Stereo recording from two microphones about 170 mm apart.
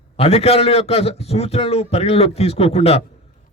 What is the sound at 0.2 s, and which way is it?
A man's voice, 35° left (ahead or behind).